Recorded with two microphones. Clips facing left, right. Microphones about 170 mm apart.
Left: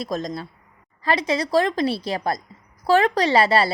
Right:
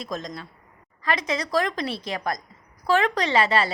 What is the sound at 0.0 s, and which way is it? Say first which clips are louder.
A woman's voice: left 5 dB; 40° left (ahead or behind).